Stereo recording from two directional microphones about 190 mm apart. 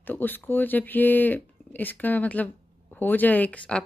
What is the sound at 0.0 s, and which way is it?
Speech, 10° left (ahead or behind).